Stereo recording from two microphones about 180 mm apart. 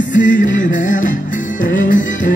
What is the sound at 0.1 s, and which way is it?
Music, 45° left (ahead or behind).